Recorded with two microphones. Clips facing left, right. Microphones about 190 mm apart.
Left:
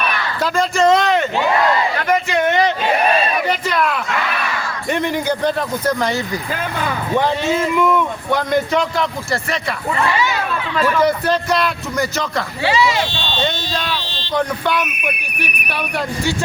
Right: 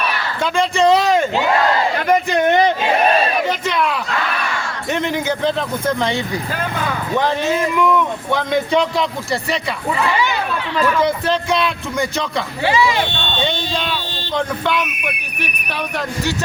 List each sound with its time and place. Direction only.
0.5 s speech: centre (ahead or behind)
3.4 s a sound: 5° left (ahead or behind)
5.3 s speech: 10° left (ahead or behind)
7.4 s speech: centre (ahead or behind)
12.6 s speech: 15° right (ahead or behind)
14.3 s speech: 5° left (ahead or behind)